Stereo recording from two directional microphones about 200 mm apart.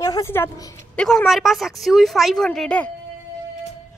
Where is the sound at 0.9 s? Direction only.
Centre (ahead or behind).